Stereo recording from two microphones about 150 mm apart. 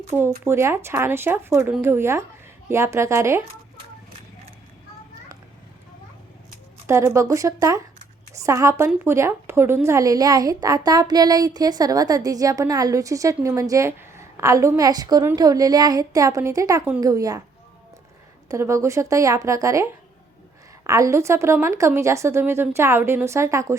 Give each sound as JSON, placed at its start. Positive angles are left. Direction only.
{"t": 0.4, "sound": "a woman's voice", "side_deg": -15}
{"t": 6.8, "sound": "a woman's voice", "side_deg": -20}
{"t": 18.4, "sound": "a woman's voice", "side_deg": -20}